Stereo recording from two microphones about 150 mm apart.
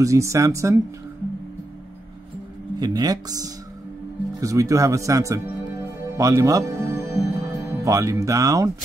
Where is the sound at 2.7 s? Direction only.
25° right (ahead or behind).